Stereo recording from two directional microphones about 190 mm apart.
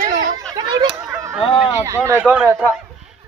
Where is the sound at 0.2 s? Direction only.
20° right (ahead or behind).